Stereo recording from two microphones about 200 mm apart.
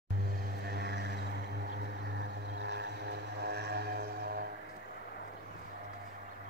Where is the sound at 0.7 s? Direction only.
55° right (ahead or behind).